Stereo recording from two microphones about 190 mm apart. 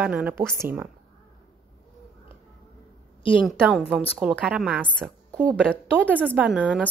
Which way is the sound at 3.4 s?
Centre (ahead or behind).